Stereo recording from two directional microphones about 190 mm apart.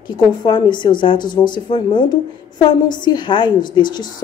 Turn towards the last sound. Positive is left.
turn(degrees=25)  # may be behind; listen again after turning